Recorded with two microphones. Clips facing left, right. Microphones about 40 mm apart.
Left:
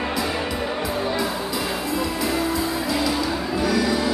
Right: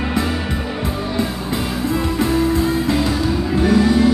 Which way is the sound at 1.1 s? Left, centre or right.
Right.